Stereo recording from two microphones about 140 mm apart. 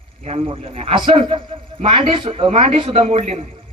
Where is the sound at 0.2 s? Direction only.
50° right (ahead or behind).